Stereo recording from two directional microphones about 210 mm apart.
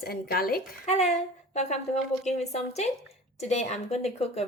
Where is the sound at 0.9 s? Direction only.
30° left (ahead or behind).